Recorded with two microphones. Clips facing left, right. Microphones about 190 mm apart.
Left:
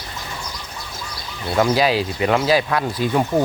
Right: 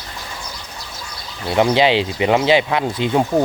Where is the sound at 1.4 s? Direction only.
20° right (ahead or behind).